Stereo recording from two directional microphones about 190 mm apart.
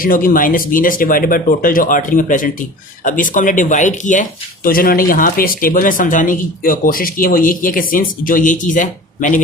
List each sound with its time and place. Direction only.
0.0 s speech: 45° left (ahead or behind)